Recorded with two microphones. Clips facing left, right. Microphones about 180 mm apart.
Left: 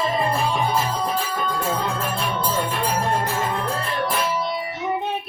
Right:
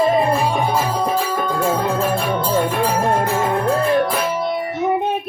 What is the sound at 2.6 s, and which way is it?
Music, 55° right (ahead or behind).